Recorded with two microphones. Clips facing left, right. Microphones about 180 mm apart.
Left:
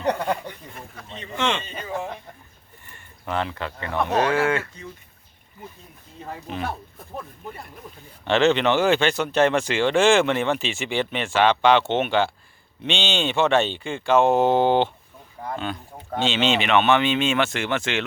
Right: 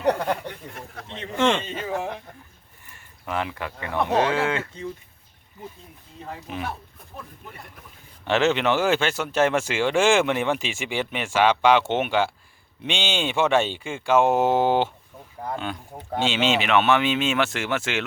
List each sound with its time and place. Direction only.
0.1 s speech: 5° right (ahead or behind)
1.4 s a man's voice: 50° right (ahead or behind)
1.6 s speech: 85° right
2.9 s speech: 5° right (ahead or behind); by 4.9 s 25° right (ahead or behind)
6.5 s speech: 10° right (ahead or behind)
8.2 s speech: 5° right (ahead or behind)